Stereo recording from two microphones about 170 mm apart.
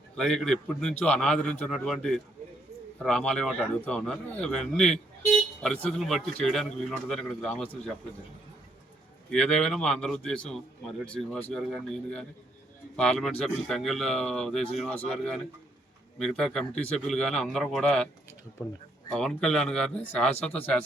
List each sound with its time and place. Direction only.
0.2 s a man's voice: 5° left (ahead or behind)
9.3 s a man's voice: 5° left (ahead or behind)
19.1 s a man's voice: 5° left (ahead or behind)